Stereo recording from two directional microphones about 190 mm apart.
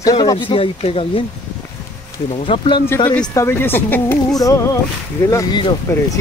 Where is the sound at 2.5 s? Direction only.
25° left (ahead or behind).